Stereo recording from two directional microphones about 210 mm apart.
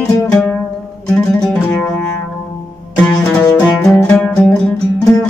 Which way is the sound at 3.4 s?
20° left (ahead or behind).